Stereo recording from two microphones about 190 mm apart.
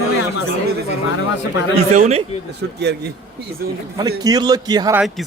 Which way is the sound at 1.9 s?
35° right (ahead or behind).